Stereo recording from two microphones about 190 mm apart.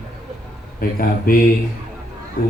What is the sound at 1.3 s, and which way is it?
Speech, 50° left (ahead or behind).